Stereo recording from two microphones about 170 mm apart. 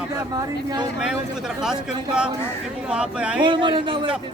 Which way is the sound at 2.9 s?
5° right (ahead or behind).